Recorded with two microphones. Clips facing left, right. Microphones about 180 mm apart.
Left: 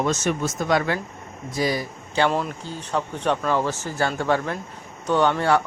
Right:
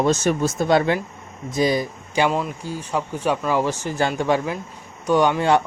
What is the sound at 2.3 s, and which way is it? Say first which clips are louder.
Speech: right 1 dB; 5° right (ahead or behind).